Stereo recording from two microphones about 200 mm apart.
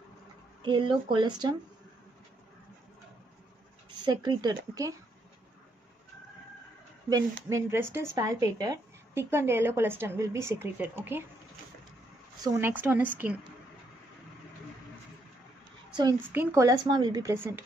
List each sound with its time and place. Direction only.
0.6 s speech: 25° right (ahead or behind)
3.9 s speech: 20° right (ahead or behind)
7.4 s speech: 15° right (ahead or behind)
12.4 s speech: 10° right (ahead or behind)
15.9 s a child's voice: 20° right (ahead or behind)